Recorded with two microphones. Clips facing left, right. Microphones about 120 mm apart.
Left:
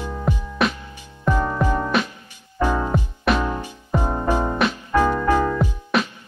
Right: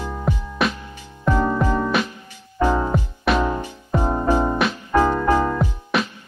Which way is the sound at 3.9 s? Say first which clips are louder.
Right 2 dB; 15° right (ahead or behind).